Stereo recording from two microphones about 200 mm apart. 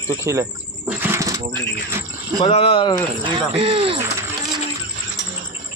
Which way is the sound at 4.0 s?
15° right (ahead or behind).